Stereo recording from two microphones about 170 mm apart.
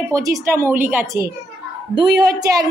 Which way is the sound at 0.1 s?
20° right (ahead or behind).